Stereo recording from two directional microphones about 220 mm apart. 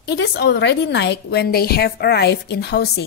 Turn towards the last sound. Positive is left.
turn(degrees=50)  # may be behind; listen again after turning